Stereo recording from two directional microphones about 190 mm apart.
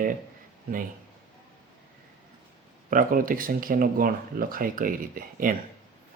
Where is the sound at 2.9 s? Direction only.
45° right (ahead or behind).